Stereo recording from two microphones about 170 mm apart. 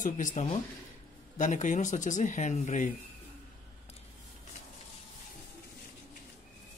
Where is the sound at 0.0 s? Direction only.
50° left (ahead or behind).